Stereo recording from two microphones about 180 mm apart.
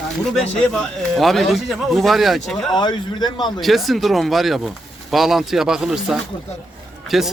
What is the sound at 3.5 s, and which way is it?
A man's voice, centre (ahead or behind).